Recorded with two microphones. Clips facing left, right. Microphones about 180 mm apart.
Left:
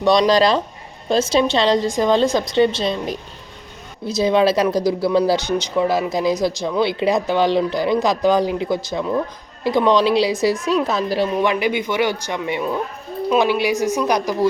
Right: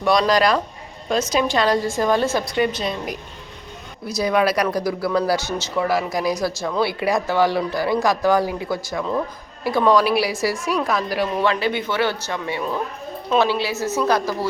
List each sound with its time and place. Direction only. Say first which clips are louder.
0.0 s speech: left 3 dB; 25° left (ahead or behind)
11.6 s speech: left 2 dB; 15° left (ahead or behind)